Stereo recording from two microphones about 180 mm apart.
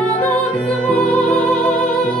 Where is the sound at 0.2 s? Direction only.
5° left (ahead or behind).